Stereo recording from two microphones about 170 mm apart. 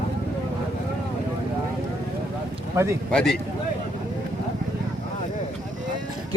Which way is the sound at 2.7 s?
15° right (ahead or behind).